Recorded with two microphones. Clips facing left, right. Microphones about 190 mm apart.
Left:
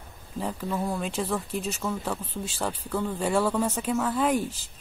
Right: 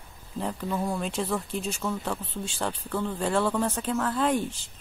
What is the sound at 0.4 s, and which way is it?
Speech, centre (ahead or behind).